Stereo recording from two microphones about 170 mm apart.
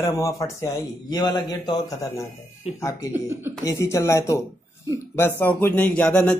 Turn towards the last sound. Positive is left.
turn(degrees=5)  # may be behind; listen again after turning